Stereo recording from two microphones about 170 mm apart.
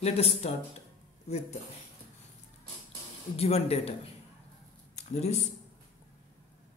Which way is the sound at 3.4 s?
35° left (ahead or behind).